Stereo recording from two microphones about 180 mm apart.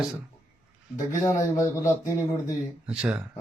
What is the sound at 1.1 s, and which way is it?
Speech, 15° left (ahead or behind).